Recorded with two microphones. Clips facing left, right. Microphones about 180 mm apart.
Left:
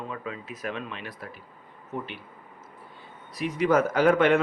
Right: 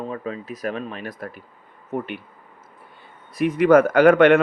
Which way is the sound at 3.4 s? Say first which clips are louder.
Right 8 dB; 55° right (ahead or behind).